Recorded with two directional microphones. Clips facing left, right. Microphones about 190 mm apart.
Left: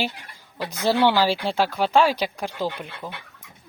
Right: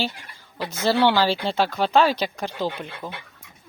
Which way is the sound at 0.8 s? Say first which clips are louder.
Even; 15° left (ahead or behind).